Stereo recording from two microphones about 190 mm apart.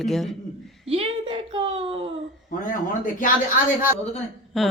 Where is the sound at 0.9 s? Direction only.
30° right (ahead or behind).